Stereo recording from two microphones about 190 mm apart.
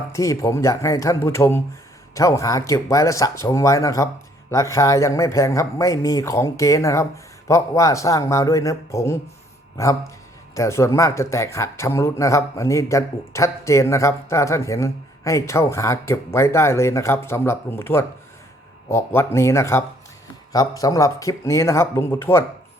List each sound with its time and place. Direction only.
0.1 s speech: 15° left (ahead or behind)
10.5 s speech: 15° left (ahead or behind)